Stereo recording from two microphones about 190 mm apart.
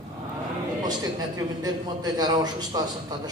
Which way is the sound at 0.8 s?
20° right (ahead or behind).